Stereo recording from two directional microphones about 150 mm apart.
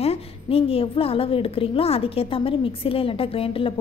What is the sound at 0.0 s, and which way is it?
A woman's voice, 40° left (ahead or behind).